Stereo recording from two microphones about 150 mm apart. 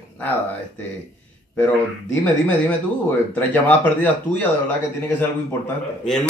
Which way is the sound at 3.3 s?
10° left (ahead or behind).